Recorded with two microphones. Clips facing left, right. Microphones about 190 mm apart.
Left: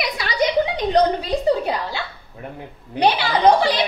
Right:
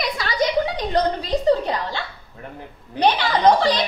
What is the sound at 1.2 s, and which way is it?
A woman's voice, 10° left (ahead or behind).